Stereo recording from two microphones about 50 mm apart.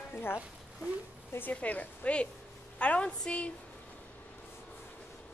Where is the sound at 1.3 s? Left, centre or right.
Left.